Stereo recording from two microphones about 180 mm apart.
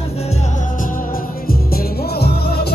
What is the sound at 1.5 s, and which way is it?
Music, 55° left (ahead or behind).